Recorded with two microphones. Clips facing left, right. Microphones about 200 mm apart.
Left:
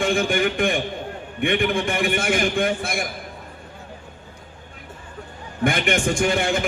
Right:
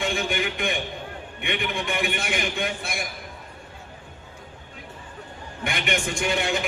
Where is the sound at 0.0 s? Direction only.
50° left (ahead or behind).